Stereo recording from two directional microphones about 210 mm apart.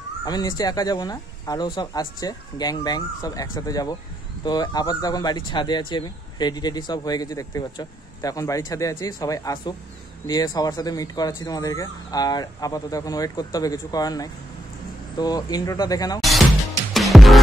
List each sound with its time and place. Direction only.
0.2 s speech: 20° left (ahead or behind)
16.9 s music: centre (ahead or behind)